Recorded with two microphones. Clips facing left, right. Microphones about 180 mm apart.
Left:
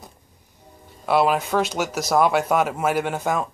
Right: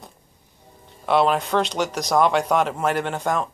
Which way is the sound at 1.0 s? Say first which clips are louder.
Even; 5° left (ahead or behind).